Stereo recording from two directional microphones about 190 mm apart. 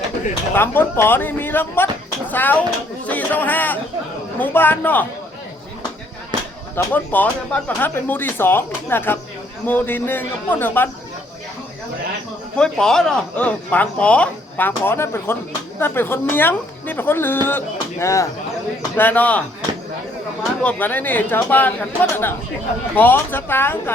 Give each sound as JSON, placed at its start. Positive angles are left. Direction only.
{"t": 0.5, "sound": "speech", "side_deg": 10}
{"t": 6.7, "sound": "speech", "side_deg": 10}
{"t": 12.5, "sound": "speech", "side_deg": 5}
{"t": 20.6, "sound": "speech", "side_deg": 10}